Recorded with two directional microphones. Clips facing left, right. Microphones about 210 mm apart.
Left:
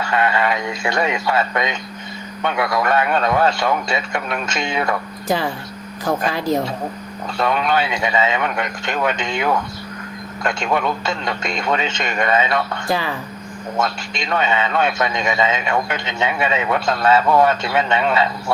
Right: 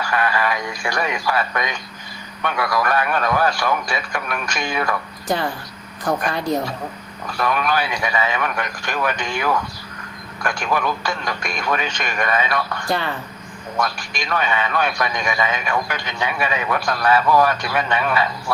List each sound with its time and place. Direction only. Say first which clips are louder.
0.0 s a man's voice: left 2 dB; 25° left (ahead or behind)
6.3 s speech: left 2 dB; 5° left (ahead or behind)
7.3 s a man's voice: left 2 dB; 25° left (ahead or behind)
12.9 s speech: left 1 dB; 5° left (ahead or behind)
13.7 s a man's voice: left 2 dB; 25° left (ahead or behind)